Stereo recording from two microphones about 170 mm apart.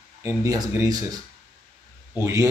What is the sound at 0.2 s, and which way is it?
Speech, 20° right (ahead or behind).